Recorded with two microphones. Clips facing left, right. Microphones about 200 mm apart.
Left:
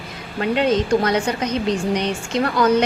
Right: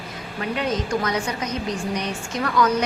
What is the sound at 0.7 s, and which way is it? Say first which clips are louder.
A woman's voice: left 5 dB; 30° left (ahead or behind).